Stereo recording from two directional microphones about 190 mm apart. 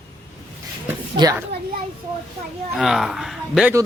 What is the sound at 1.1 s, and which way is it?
Speech, 20° right (ahead or behind).